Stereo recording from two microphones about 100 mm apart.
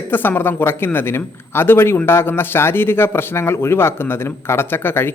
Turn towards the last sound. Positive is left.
turn(degrees=25)  # may be behind; listen again after turning